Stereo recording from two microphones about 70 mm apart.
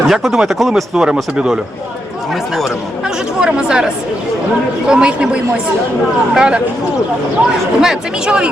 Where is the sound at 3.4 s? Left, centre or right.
Centre.